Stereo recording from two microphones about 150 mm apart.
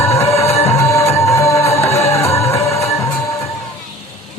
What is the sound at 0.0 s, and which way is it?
Music, 15° left (ahead or behind).